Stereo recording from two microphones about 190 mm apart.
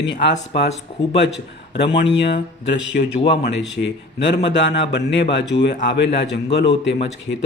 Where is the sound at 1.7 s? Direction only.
65° left (ahead or behind).